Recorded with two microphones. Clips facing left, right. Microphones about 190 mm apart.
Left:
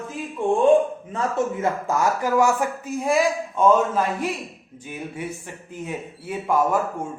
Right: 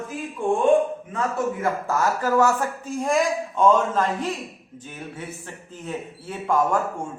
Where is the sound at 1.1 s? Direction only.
25° left (ahead or behind); by 6.8 s 10° left (ahead or behind).